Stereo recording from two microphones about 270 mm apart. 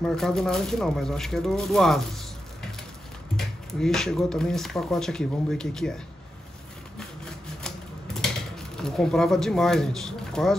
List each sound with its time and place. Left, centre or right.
0.0 s speech: centre
7.0 s typewriter: centre